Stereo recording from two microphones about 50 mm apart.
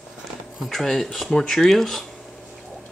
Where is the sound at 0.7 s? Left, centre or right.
Centre.